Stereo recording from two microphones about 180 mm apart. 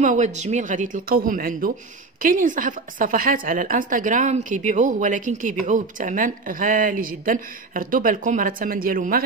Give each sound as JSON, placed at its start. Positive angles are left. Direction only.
{"t": 0.0, "sound": "a woman's voice", "side_deg": -45}